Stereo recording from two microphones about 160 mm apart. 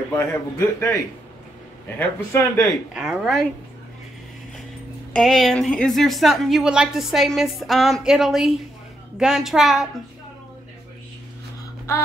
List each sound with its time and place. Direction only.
0.1 s a man's voice: 15° left (ahead or behind)
2.0 s a man's voice: 15° left (ahead or behind)
2.9 s a woman's voice: 5° right (ahead or behind)
5.1 s a woman's voice: centre (ahead or behind)